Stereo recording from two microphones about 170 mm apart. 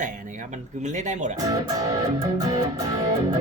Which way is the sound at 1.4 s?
20° right (ahead or behind).